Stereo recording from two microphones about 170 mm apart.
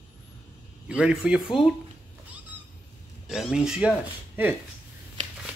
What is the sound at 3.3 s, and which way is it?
Speech, 5° right (ahead or behind).